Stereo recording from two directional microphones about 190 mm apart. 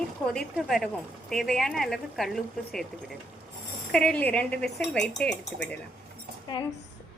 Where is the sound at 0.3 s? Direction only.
Centre (ahead or behind).